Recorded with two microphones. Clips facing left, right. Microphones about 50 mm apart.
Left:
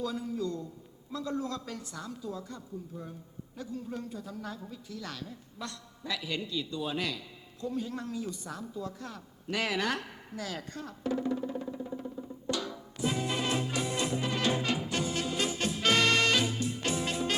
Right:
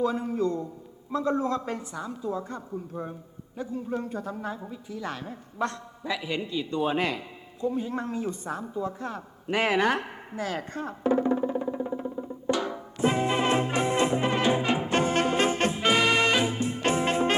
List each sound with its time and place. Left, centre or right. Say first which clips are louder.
0.0 s a woman's voice: right 8 dB; right
3.6 s a woman's voice: right 7 dB; right
6.0 s a woman's voice: right 5 dB; right
6.7 s a woman's voice: right 11 dB; right
7.6 s a sound: right 6 dB; right
14.4 s music: right 6 dB; right
15.7 s music: right 3 dB; centre; by 17.3 s right